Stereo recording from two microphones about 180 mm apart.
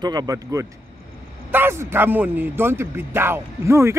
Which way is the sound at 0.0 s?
20° right (ahead or behind).